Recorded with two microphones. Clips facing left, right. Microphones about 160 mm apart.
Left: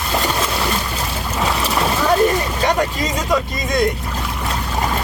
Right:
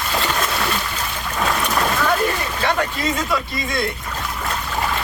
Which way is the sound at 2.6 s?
35° left (ahead or behind).